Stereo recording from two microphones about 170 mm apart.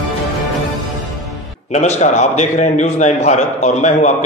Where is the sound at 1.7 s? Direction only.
40° left (ahead or behind).